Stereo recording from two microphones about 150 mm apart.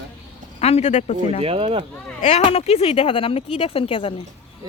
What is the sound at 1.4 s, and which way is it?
Speech, 40° right (ahead or behind).